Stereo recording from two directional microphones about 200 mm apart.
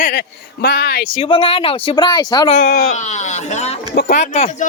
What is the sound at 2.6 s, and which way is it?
Speech, 50° left (ahead or behind).